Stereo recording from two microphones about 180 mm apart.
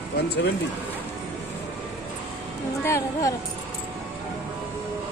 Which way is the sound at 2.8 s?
15° left (ahead or behind).